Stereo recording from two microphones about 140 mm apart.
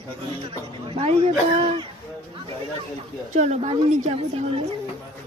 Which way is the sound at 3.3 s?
55° right (ahead or behind).